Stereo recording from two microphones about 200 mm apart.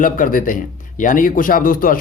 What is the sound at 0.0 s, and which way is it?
Speech, 45° left (ahead or behind).